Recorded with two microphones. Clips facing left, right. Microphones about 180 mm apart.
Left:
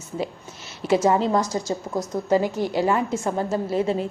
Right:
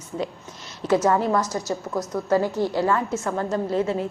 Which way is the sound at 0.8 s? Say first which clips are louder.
Left 1 dB; 10° left (ahead or behind).